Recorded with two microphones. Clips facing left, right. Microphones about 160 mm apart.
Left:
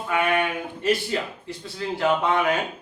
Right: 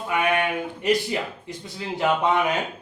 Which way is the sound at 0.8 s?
15° right (ahead or behind).